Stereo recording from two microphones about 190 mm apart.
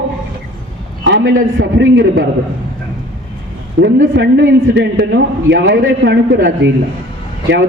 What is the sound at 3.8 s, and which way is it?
A man's voice, 70° right (ahead or behind).